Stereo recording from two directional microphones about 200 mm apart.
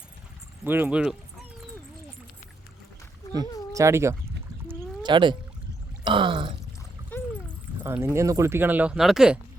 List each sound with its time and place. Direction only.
0.6 s speech: 10° right (ahead or behind)
3.7 s speech: 15° right (ahead or behind)
5.0 s a sound: 25° right (ahead or behind)
7.9 s speech: 10° right (ahead or behind)